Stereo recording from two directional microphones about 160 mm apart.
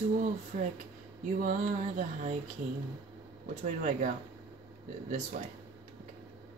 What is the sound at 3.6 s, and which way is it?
Music, 55° right (ahead or behind).